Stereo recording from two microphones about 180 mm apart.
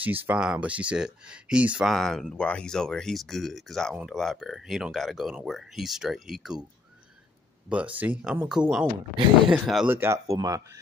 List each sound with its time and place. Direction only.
0.0 s speech: 10° right (ahead or behind)
7.7 s speech: 10° right (ahead or behind)
9.8 s speech: 15° right (ahead or behind)